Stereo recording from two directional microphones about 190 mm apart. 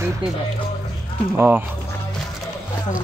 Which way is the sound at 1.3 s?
10° right (ahead or behind).